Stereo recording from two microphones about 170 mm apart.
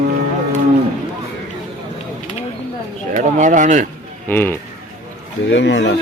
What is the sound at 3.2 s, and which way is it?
Speech, 45° right (ahead or behind).